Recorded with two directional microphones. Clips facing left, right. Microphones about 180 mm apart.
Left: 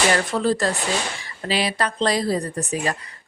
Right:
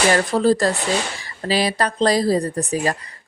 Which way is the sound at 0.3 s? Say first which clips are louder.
Right 4 dB; 35° right (ahead or behind).